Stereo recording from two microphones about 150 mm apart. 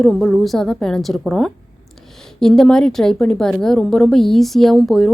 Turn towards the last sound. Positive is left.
turn(degrees=0)  # may be behind; listen again after turning